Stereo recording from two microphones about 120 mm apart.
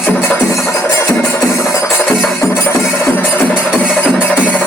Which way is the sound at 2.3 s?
20° left (ahead or behind).